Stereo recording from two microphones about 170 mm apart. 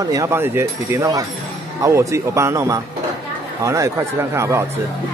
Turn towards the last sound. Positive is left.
turn(degrees=-15)  # may be behind; listen again after turning